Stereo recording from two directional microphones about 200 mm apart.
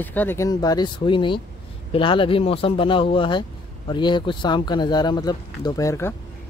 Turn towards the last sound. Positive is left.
turn(degrees=15)  # may be behind; listen again after turning